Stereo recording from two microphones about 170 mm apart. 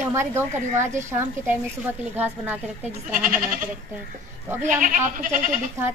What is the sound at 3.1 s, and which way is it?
Goat, 50° right (ahead or behind).